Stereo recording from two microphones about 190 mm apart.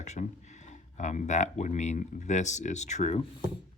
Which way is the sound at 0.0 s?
40° left (ahead or behind).